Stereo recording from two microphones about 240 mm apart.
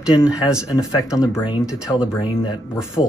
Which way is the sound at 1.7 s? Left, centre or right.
Centre.